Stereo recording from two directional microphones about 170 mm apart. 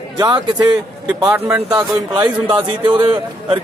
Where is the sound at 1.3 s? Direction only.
10° right (ahead or behind).